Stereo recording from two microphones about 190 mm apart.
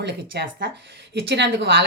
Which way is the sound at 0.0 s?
60° right (ahead or behind).